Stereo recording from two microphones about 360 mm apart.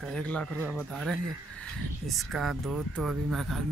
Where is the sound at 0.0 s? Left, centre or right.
Centre.